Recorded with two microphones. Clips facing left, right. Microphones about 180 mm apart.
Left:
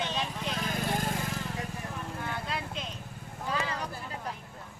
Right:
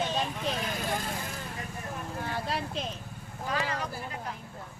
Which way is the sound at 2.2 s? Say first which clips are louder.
Right 4 dB; 35° right (ahead or behind).